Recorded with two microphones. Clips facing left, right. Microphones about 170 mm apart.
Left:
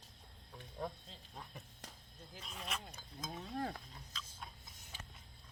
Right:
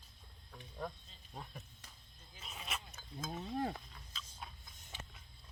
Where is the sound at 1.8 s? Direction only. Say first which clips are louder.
Left 7 dB; 90° left.